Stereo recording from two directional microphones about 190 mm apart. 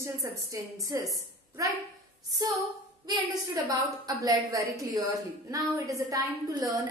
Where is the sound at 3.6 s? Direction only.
20° right (ahead or behind).